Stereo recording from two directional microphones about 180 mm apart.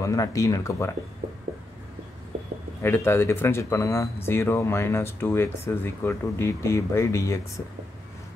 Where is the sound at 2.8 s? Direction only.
15° left (ahead or behind).